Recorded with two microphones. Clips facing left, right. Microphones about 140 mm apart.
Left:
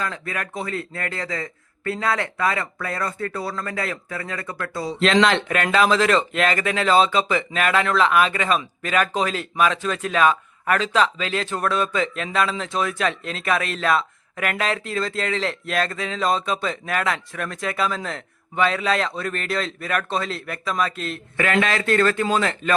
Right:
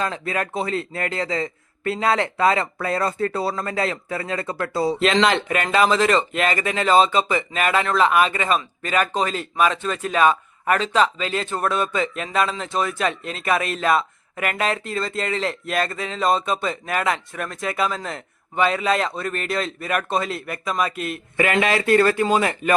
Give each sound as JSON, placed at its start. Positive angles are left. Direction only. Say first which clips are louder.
{"t": 0.0, "sound": "a man's voice", "louder": "right 4 dB", "side_deg": -25}
{"t": 4.9, "sound": "speech", "louder": "left 1 dB", "side_deg": -5}